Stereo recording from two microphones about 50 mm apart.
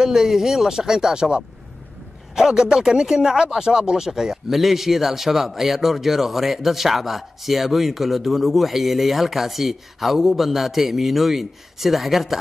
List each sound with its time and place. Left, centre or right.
0.0 s speech: centre